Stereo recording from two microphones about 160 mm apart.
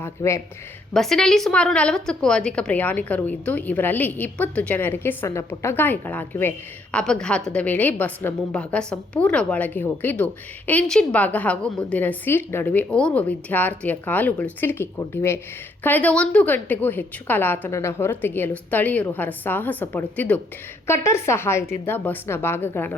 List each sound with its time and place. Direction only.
0.0 s a woman's voice: 20° left (ahead or behind)
0.9 s a woman's voice: 5° left (ahead or behind)